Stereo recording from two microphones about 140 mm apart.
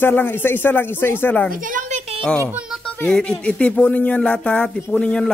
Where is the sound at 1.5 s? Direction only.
75° right (ahead or behind).